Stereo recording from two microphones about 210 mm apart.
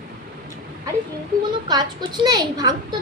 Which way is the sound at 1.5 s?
20° right (ahead or behind).